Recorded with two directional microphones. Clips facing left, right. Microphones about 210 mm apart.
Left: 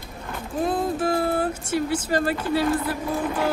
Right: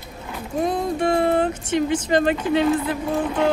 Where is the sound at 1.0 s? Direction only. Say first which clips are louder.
Right 4 dB; 5° left (ahead or behind).